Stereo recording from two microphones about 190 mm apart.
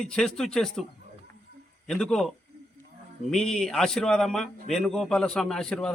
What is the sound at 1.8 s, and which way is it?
A man's voice, 5° left (ahead or behind).